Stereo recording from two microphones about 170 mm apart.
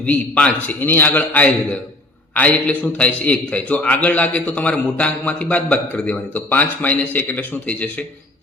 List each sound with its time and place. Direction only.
0.0 s a man's voice: 10° left (ahead or behind)